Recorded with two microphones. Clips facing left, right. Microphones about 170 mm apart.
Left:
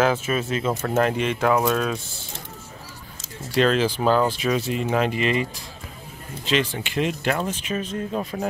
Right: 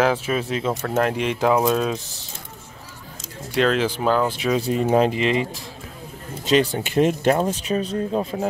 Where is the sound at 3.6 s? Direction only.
15° right (ahead or behind).